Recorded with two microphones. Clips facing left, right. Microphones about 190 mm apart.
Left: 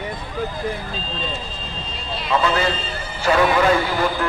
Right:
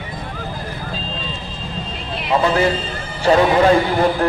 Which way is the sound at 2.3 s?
25° right (ahead or behind).